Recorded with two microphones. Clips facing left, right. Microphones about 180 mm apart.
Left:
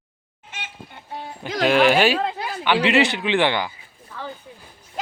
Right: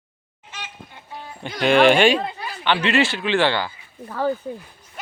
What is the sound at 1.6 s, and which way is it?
Speech, 5° left (ahead or behind).